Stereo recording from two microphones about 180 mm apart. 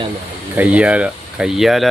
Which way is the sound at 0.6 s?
5° right (ahead or behind).